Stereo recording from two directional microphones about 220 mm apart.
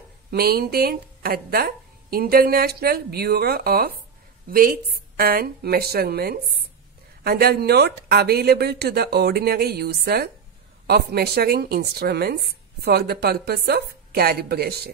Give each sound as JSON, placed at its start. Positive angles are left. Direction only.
{"t": 0.3, "sound": "speech", "side_deg": -45}